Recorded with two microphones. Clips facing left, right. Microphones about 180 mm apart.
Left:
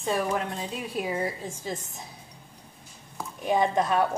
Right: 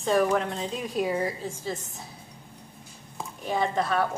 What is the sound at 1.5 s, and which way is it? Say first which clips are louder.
Speech: right 1 dB; 15° left (ahead or behind).